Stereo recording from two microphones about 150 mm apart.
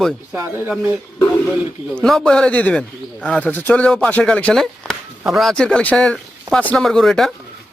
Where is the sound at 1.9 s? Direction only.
5° left (ahead or behind).